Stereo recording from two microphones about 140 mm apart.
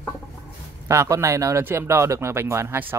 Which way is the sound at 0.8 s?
20° right (ahead or behind).